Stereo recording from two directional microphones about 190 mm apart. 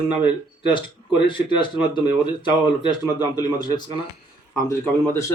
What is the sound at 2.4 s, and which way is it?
Speech, 25° left (ahead or behind).